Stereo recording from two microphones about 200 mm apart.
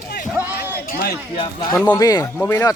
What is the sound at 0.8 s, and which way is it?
Speech, 45° left (ahead or behind).